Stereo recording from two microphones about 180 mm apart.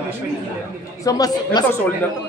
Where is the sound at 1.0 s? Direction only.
20° left (ahead or behind).